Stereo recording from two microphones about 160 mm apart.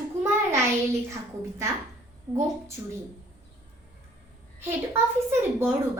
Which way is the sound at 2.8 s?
15° right (ahead or behind).